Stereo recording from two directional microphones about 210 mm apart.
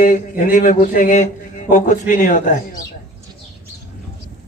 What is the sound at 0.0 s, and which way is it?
A man's voice, 40° left (ahead or behind).